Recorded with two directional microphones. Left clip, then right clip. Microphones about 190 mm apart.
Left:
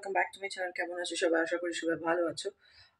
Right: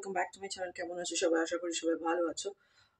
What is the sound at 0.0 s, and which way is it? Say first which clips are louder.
Speech: left 4 dB; 10° right (ahead or behind).